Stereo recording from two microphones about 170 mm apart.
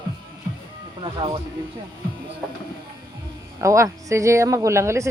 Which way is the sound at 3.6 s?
20° right (ahead or behind).